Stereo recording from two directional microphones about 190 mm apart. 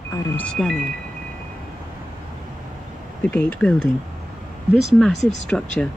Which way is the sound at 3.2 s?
5° left (ahead or behind).